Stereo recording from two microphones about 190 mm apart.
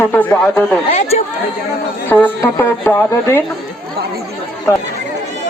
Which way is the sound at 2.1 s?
10° left (ahead or behind).